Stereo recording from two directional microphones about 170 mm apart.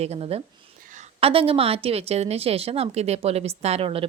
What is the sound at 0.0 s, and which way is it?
A woman's voice, 35° right (ahead or behind).